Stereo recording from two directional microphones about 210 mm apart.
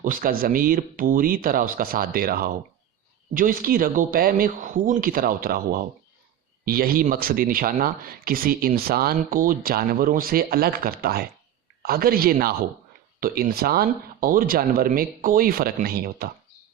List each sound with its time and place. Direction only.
0.0 s speech: 40° right (ahead or behind)